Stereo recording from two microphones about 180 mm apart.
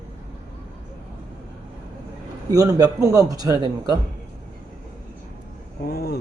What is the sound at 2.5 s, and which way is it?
A man's voice, 20° right (ahead or behind).